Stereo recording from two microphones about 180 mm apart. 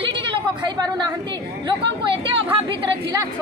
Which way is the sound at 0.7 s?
20° right (ahead or behind).